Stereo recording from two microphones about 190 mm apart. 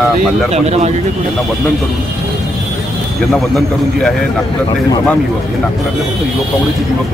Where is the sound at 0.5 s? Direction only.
35° right (ahead or behind).